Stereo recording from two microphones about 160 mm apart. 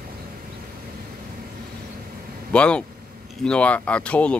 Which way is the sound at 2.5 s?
5° left (ahead or behind).